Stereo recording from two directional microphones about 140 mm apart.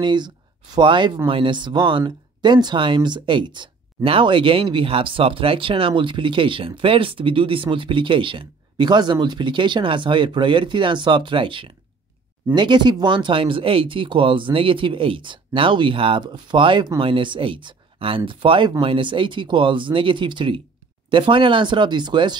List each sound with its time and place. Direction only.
0.0 s speech: 35° right (ahead or behind)